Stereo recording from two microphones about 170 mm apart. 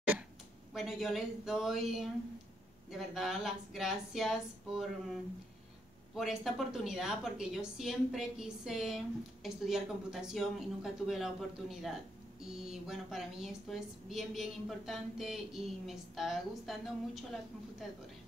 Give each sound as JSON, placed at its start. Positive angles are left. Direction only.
{"t": 0.7, "sound": "a woman's voice", "side_deg": 0}